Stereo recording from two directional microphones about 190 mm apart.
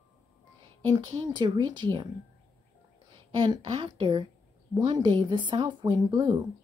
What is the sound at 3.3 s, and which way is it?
A woman's voice, 30° right (ahead or behind).